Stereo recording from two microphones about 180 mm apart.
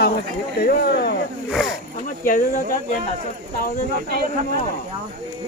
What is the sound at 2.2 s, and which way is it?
Speech, 50° left (ahead or behind).